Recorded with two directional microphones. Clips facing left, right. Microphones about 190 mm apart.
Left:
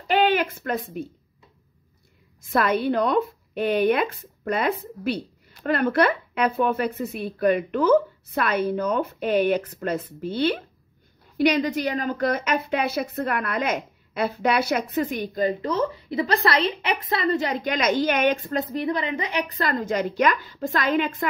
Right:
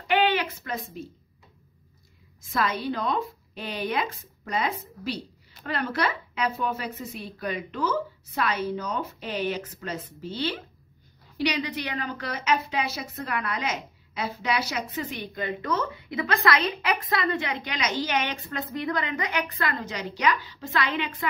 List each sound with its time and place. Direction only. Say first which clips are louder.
0.1 s a woman's voice: left 3 dB; 45° left (ahead or behind)
2.5 s a woman's voice: left 6 dB; 55° left (ahead or behind)
15.3 s a woman's voice: left 4 dB; 35° left (ahead or behind)